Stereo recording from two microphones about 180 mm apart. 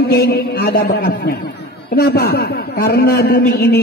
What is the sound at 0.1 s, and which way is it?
A man's voice, 60° left (ahead or behind).